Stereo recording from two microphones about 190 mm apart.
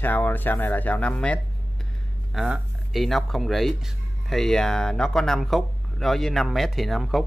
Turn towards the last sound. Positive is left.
turn(degrees=0)  # may be behind; listen again after turning